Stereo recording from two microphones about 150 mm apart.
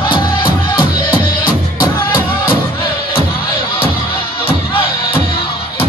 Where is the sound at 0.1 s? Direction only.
30° left (ahead or behind).